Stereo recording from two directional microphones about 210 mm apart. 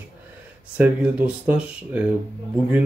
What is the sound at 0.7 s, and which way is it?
Speech, 10° right (ahead or behind).